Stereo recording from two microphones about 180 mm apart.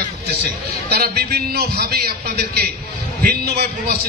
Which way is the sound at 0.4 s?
60° right (ahead or behind).